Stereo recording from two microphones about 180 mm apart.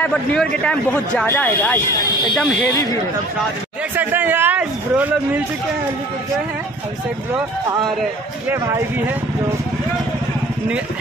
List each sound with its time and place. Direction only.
0.0 s speech: 5° left (ahead or behind)
2.3 s speech: centre (ahead or behind)
2.7 s speech: 20° left (ahead or behind)
3.9 s speech: 10° right (ahead or behind)